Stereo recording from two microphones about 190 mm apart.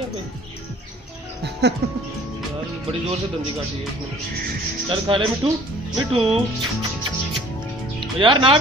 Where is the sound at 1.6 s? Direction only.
60° right (ahead or behind).